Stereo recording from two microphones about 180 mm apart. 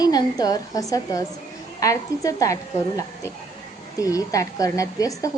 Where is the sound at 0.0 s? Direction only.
20° left (ahead or behind).